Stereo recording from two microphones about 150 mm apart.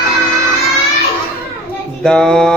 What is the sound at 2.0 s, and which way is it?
Speech, 5° left (ahead or behind).